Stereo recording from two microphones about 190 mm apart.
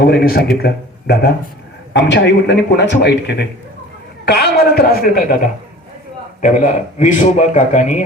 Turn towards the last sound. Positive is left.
turn(degrees=40)  # may be behind; listen again after turning